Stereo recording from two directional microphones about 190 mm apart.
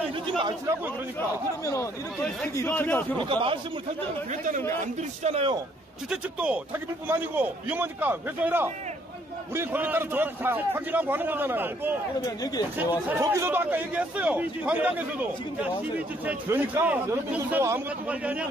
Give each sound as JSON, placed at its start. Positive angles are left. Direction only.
{"t": 0.4, "sound": "speech", "side_deg": -25}
{"t": 1.6, "sound": "speech", "side_deg": 15}
{"t": 3.2, "sound": "speech", "side_deg": -25}
{"t": 4.3, "sound": "speech", "side_deg": -40}
{"t": 5.2, "sound": "a man's voice", "side_deg": -30}
{"t": 6.0, "sound": "a man's voice", "side_deg": -5}
{"t": 12.3, "sound": "speech", "side_deg": 20}
{"t": 13.2, "sound": "a man's voice", "side_deg": -15}